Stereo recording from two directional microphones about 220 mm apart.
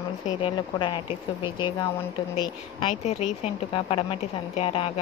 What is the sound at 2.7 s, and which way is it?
A woman's voice, 25° left (ahead or behind).